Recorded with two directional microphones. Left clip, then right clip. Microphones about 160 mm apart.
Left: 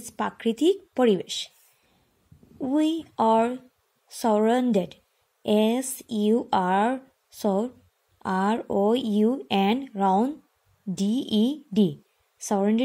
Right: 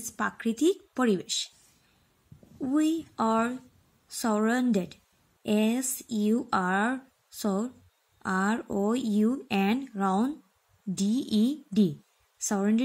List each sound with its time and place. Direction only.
0.0 s speech: 15° left (ahead or behind)
2.6 s a woman's voice: 15° left (ahead or behind)